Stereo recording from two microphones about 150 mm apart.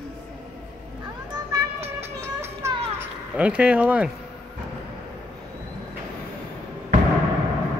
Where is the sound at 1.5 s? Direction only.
25° right (ahead or behind); by 4.1 s 10° right (ahead or behind).